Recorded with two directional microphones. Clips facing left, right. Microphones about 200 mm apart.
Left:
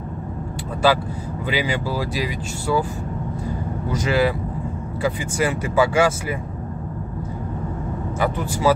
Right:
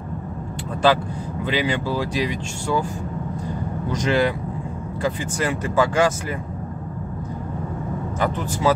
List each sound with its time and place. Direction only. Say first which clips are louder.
0.8 s speech: even; 5° left (ahead or behind)
3.9 s speech: even; 5° left (ahead or behind)
8.2 s speech: left 1 dB; 10° left (ahead or behind)